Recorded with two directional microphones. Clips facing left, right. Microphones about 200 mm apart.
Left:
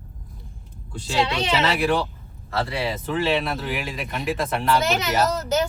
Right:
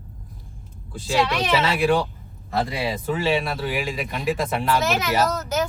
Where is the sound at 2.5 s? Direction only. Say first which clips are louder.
Right 1 dB; 15° right (ahead or behind).